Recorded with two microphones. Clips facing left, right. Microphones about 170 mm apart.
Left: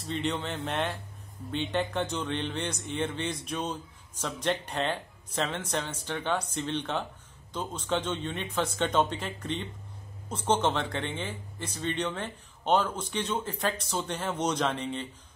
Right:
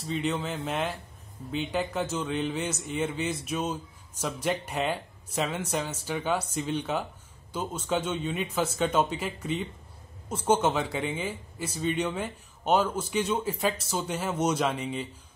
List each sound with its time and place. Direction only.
0.0 s a man's voice: centre (ahead or behind)